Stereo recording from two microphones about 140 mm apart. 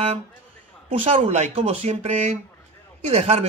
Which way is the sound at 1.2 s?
55° right (ahead or behind).